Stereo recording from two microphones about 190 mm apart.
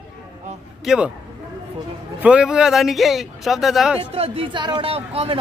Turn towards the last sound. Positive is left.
turn(degrees=-30)  # may be behind; listen again after turning